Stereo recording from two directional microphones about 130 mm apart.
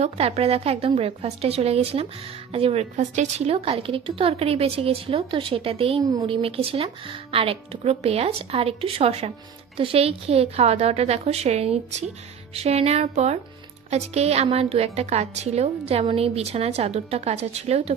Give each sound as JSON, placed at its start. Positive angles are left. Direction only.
{"t": 0.0, "sound": "a woman's voice", "side_deg": -50}